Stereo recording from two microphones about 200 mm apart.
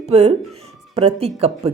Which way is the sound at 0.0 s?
30° right (ahead or behind).